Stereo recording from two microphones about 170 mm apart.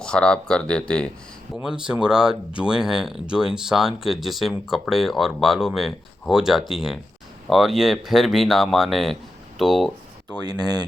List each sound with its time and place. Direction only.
0.0 s speech: 5° left (ahead or behind)
1.6 s speech: 5° right (ahead or behind)
10.4 s speech: 25° right (ahead or behind)